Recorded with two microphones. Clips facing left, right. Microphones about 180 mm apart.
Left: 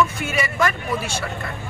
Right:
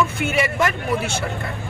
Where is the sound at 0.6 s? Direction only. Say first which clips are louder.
Right 1 dB; 25° right (ahead or behind).